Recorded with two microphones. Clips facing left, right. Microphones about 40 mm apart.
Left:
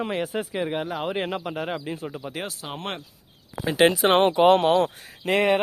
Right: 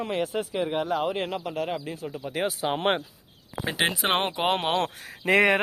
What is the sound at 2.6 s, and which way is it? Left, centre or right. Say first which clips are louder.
Speech: right 8 dB; right.